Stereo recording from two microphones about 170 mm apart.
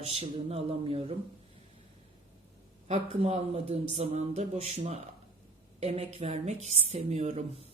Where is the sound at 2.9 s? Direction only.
35° right (ahead or behind).